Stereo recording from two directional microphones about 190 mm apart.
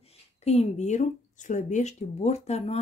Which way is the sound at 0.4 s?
35° left (ahead or behind).